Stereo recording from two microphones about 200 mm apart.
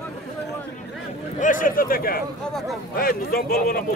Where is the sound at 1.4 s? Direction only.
40° left (ahead or behind).